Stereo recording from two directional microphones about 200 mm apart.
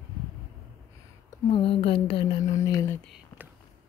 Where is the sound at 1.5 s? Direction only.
25° left (ahead or behind).